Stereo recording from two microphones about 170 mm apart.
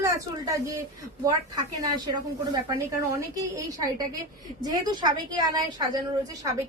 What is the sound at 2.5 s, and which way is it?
A woman's voice, 20° right (ahead or behind).